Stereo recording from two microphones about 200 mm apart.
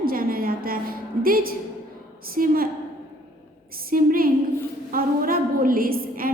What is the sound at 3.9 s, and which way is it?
A woman's voice, 45° right (ahead or behind).